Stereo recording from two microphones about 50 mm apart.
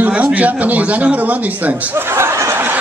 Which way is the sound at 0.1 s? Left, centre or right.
Right.